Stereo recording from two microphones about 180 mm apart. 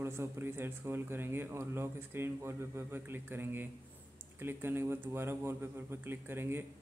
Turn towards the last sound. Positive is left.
turn(degrees=-10)  # may be behind; listen again after turning